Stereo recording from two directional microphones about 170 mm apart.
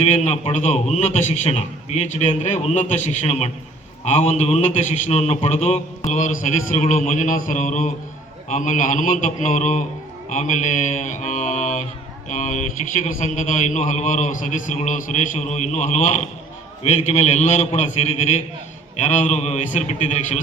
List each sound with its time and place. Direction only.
0.0 s a man's voice: 40° left (ahead or behind)
6.1 s a man's voice: 50° left (ahead or behind)